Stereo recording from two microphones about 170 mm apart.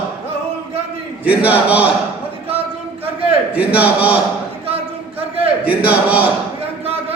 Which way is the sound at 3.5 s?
10° right (ahead or behind).